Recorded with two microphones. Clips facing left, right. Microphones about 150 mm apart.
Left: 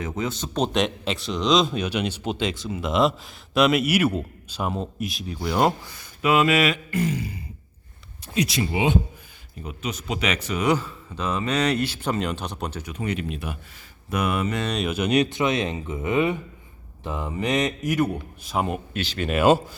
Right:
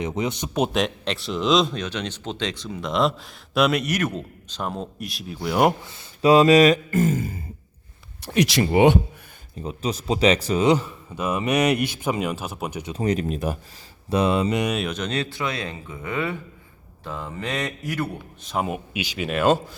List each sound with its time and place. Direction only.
0.0 s speech: 20° right (ahead or behind)
5.6 s speech: 25° right (ahead or behind); by 7.4 s 45° right (ahead or behind)
8.2 s speech: 75° right (ahead or behind)
8.7 s speech: 60° right (ahead or behind)
9.6 s a man's voice: 35° right (ahead or behind); by 12.8 s 5° right (ahead or behind)
12.8 s speech: 35° right (ahead or behind)
14.1 s mantra: 30° right (ahead or behind)
14.7 s speech: centre (ahead or behind)
14.9 s speech: 10° left (ahead or behind)
18.4 s speech: centre (ahead or behind)
18.9 s a man's voice: 10° right (ahead or behind)
19.3 s speech: 5° left (ahead or behind)